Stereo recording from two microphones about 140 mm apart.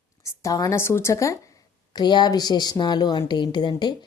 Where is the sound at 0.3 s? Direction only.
25° left (ahead or behind).